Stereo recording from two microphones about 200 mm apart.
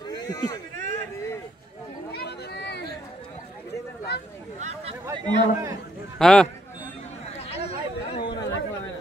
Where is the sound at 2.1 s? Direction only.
55° left (ahead or behind).